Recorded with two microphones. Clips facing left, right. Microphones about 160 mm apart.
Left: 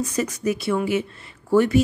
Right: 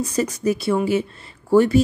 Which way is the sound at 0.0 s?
30° right (ahead or behind).